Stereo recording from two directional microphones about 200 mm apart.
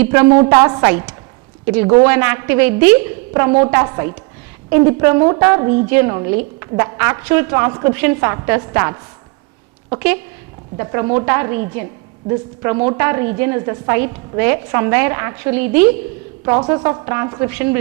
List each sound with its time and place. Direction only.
0.0 s a woman's voice: 10° right (ahead or behind)
10.8 s a woman's voice: 15° right (ahead or behind)